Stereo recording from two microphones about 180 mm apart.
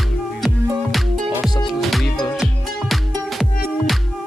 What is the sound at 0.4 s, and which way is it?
Music, centre (ahead or behind).